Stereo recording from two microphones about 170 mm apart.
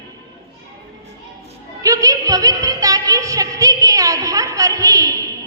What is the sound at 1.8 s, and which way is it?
Music, 20° right (ahead or behind).